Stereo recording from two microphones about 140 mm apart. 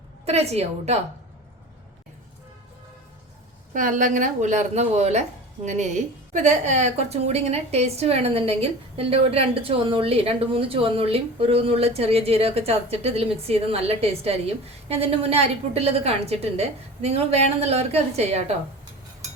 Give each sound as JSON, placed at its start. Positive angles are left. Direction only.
{"t": 0.3, "sound": "a woman's voice", "side_deg": -50}
{"t": 3.7, "sound": "a woman's voice", "side_deg": -70}